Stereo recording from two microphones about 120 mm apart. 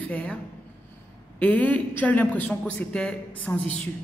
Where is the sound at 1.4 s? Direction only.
10° left (ahead or behind).